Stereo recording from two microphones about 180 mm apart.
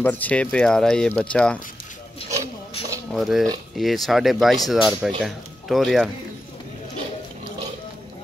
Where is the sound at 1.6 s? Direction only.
50° left (ahead or behind).